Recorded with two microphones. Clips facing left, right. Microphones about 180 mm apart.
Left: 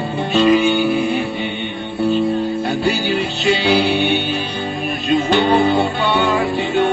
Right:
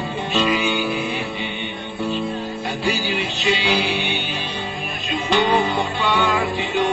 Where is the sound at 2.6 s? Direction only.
40° left (ahead or behind).